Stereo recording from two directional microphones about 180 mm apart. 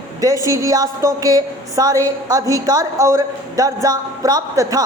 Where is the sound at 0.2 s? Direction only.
20° right (ahead or behind).